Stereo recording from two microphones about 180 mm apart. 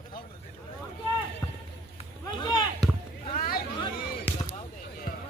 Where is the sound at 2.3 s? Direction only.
25° left (ahead or behind).